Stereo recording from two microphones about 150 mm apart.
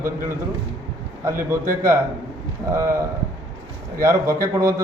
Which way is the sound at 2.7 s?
20° right (ahead or behind).